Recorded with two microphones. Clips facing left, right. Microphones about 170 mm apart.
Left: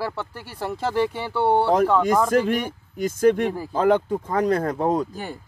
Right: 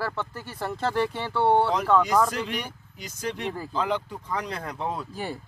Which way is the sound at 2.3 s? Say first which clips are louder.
Left 10 dB; 50° left (ahead or behind).